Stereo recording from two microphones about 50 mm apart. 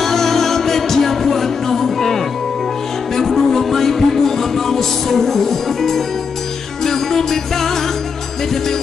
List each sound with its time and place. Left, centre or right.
0.0 s music: centre